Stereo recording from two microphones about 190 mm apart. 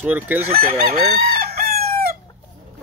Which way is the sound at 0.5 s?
50° right (ahead or behind).